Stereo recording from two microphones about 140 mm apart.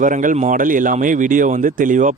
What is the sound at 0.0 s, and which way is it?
Speech, 70° right (ahead or behind).